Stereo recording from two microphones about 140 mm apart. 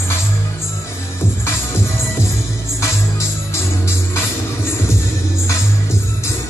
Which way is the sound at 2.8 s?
20° left (ahead or behind).